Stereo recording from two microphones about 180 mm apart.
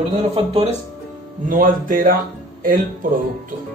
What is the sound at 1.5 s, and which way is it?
Speech, 50° right (ahead or behind).